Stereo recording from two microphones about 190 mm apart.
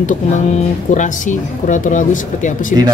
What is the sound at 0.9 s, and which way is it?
Speech, 40° left (ahead or behind).